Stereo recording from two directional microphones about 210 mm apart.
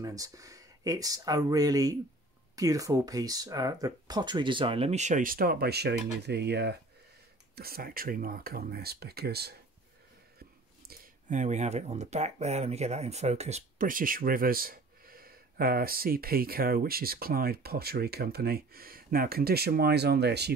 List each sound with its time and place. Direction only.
0.0 s speech: 15° right (ahead or behind); by 9.6 s 50° right (ahead or behind)
10.9 s speech: 35° right (ahead or behind); by 20.5 s 50° right (ahead or behind)